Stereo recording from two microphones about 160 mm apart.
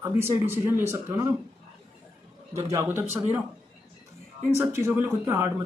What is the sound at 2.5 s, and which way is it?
Speech, 20° right (ahead or behind).